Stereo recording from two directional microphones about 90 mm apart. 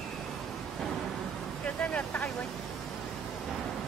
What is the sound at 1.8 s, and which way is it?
Vehicle, 15° left (ahead or behind).